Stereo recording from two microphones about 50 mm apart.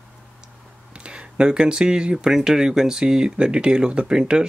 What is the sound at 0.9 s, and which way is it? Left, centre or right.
Speech, right.